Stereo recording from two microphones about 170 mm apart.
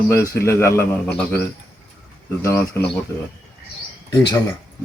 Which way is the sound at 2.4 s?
15° left (ahead or behind).